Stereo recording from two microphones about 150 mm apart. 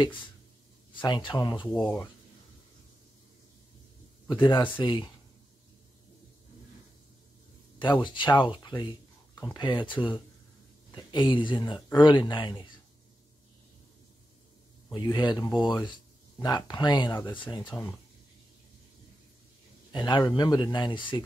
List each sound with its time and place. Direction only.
0.0 s speech: 30° left (ahead or behind)
4.3 s speech: 30° left (ahead or behind)
8.0 s speech: 30° left (ahead or behind)
14.9 s speech: 25° left (ahead or behind)
19.9 s speech: 30° left (ahead or behind)